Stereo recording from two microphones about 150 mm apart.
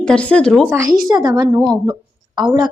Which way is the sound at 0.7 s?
20° right (ahead or behind).